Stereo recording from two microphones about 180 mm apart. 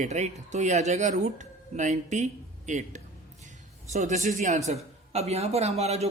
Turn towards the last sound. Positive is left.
turn(degrees=-35)  # may be behind; listen again after turning